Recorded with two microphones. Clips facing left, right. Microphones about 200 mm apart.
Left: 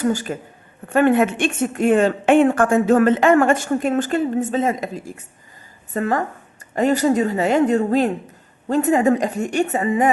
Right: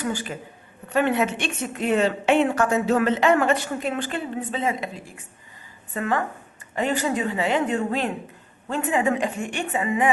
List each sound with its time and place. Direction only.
0.0 s a woman's voice: 40° left (ahead or behind)